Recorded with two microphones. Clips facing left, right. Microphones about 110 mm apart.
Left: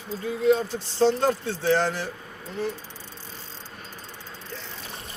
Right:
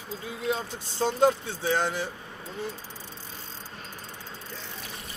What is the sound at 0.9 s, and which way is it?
Speech, 15° right (ahead or behind).